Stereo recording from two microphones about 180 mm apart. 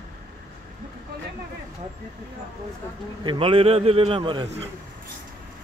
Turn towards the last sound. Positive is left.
turn(degrees=-30)  # may be behind; listen again after turning